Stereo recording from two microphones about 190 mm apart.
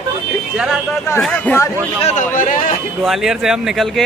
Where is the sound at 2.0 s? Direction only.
40° left (ahead or behind).